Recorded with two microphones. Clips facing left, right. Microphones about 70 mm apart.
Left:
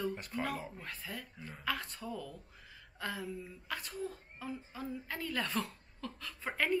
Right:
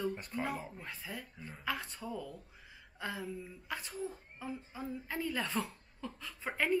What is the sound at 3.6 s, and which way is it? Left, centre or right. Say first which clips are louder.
Speech: even; centre.